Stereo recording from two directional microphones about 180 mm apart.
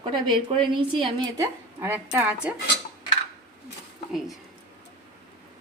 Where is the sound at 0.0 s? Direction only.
25° right (ahead or behind); by 2.6 s 5° right (ahead or behind).